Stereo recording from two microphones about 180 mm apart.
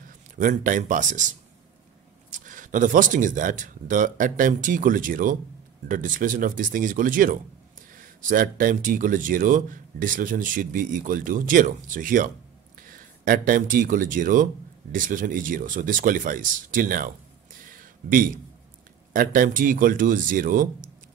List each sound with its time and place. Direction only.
0.0 s speech: 50° right (ahead or behind)
2.3 s speech: 45° right (ahead or behind)